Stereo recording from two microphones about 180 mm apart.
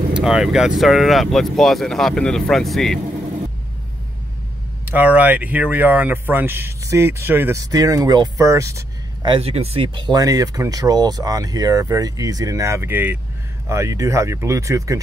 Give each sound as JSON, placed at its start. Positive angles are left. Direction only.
{"t": 0.1, "sound": "speech", "side_deg": -5}
{"t": 4.8, "sound": "speech", "side_deg": -10}